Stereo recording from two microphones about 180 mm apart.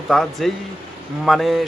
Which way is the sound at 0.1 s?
Centre (ahead or behind).